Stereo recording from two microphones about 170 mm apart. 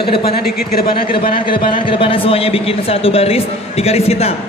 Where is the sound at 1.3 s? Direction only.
30° left (ahead or behind).